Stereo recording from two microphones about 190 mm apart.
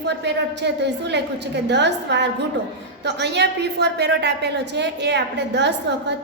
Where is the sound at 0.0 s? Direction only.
65° right (ahead or behind).